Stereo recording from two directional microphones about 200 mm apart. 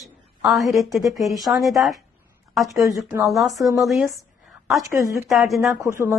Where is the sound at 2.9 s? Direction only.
15° right (ahead or behind).